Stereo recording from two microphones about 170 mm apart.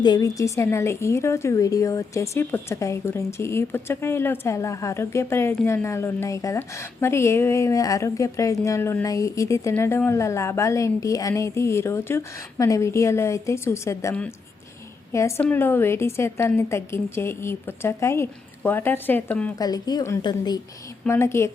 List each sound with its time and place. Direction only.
0.0 s a woman's voice: 20° left (ahead or behind)
19.5 s a woman's voice: 25° left (ahead or behind)